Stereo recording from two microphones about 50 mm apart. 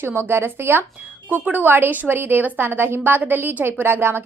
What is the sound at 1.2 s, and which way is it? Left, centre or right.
A woman's voice, right.